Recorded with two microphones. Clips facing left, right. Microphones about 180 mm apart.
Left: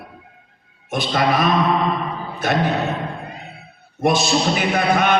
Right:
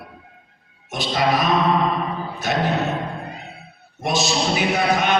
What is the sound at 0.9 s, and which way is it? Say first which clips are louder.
A man's voice: left 1 dB; 55° left (ahead or behind).